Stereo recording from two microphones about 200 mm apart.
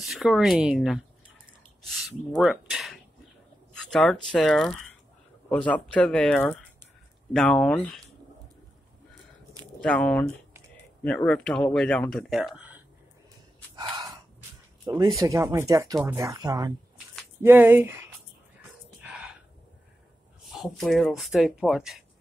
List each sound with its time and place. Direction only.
0.0 s speech: centre (ahead or behind)
2.0 s speech: centre (ahead or behind)
9.8 s speech: 5° left (ahead or behind)
15.1 s speech: 15° right (ahead or behind)
20.4 s speech: centre (ahead or behind)